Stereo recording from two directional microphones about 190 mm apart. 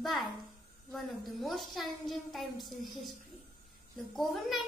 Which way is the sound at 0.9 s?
Centre (ahead or behind).